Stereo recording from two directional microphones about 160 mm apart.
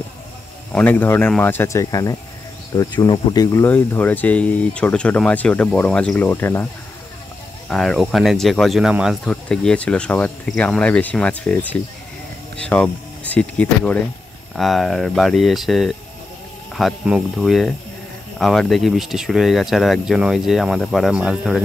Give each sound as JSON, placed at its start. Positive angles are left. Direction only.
{"t": 0.7, "sound": "speech", "side_deg": 10}
{"t": 3.6, "sound": "speech", "side_deg": 10}
{"t": 7.7, "sound": "speech", "side_deg": 0}